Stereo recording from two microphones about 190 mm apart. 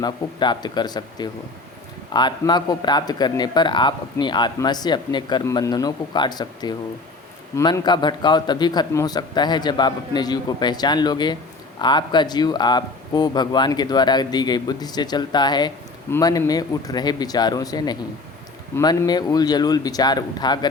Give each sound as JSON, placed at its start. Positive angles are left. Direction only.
{"t": 0.0, "sound": "speech", "side_deg": 20}